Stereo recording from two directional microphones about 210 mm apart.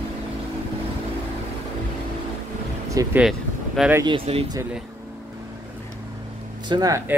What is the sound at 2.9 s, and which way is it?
Speech, 15° right (ahead or behind).